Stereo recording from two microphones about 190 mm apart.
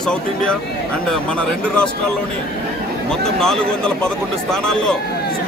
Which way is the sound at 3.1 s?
5° left (ahead or behind).